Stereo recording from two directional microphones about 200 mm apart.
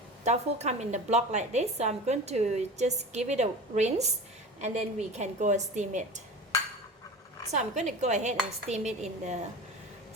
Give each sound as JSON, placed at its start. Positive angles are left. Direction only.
{"t": 0.3, "sound": "a woman's voice", "side_deg": -35}
{"t": 7.5, "sound": "a woman's voice", "side_deg": -35}